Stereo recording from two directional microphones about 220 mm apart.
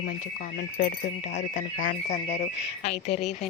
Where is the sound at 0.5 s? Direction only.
30° left (ahead or behind).